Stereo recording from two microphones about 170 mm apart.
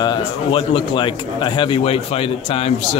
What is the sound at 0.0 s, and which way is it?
Speech, 30° left (ahead or behind).